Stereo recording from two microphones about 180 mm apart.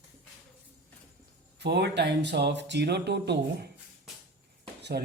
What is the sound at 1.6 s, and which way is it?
Speech, 70° right (ahead or behind).